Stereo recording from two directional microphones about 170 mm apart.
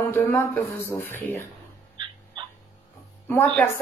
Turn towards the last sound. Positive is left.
turn(degrees=10)  # may be behind; listen again after turning